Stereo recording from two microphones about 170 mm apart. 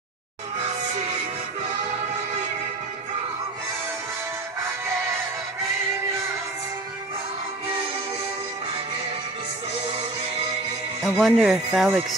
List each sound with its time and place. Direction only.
11.0 s speech: centre (ahead or behind)